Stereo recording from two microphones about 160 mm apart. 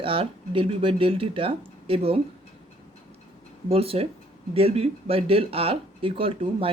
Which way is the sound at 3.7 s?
40° right (ahead or behind).